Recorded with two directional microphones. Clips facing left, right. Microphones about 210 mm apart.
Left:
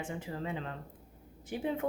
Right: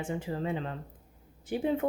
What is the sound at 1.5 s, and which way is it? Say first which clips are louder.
Speech: right 6 dB; 30° right (ahead or behind).